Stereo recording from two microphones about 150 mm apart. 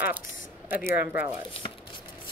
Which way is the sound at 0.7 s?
15° right (ahead or behind).